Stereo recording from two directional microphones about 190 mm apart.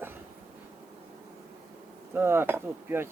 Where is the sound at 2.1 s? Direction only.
10° right (ahead or behind).